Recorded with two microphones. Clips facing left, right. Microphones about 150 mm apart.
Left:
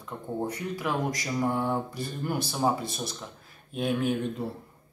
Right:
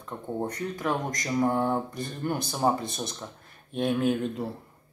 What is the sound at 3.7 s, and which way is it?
Speech, centre (ahead or behind).